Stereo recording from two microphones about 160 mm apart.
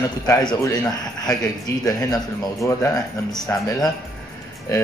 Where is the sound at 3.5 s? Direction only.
20° left (ahead or behind).